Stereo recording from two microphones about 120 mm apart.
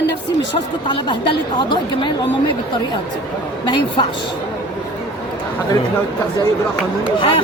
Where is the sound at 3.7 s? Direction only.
40° left (ahead or behind).